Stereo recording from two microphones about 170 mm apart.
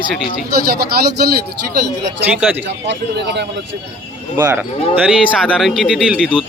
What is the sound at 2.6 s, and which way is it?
A man's voice, 90° right.